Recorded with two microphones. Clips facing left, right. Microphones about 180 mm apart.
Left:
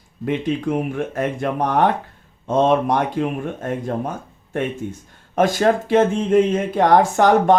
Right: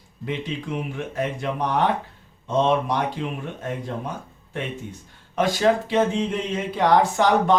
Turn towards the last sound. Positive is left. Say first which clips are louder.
# left 4 dB
turn(degrees=50)  # may be behind; listen again after turning